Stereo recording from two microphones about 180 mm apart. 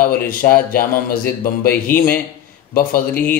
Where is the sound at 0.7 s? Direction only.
50° left (ahead or behind).